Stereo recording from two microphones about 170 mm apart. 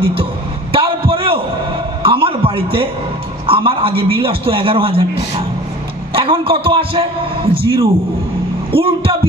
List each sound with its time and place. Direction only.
0.1 s a sound: 30° right (ahead or behind)
3.4 s a man's voice: 30° right (ahead or behind)
6.1 s a man's voice: 30° right (ahead or behind)